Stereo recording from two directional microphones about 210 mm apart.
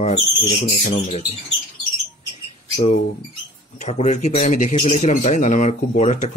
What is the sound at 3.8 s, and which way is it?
Speech, 35° left (ahead or behind).